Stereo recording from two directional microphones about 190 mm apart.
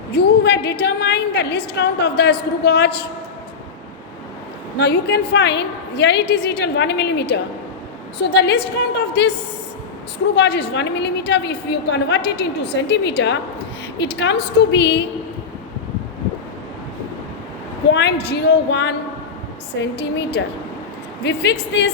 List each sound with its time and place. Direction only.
0.1 s a woman's voice: 60° left (ahead or behind)
4.8 s a woman's voice: 60° left (ahead or behind)
10.3 s a woman's voice: 60° left (ahead or behind)
17.9 s a woman's voice: 65° left (ahead or behind)